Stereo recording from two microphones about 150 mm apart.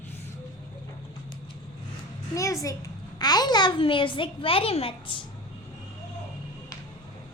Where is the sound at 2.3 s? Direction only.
20° left (ahead or behind); by 5.2 s 35° left (ahead or behind).